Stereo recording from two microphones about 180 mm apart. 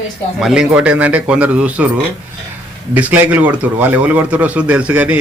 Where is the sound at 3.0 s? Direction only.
10° right (ahead or behind).